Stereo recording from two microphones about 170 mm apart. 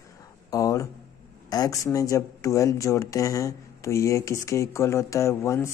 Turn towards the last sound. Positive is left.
turn(degrees=15)  # may be behind; listen again after turning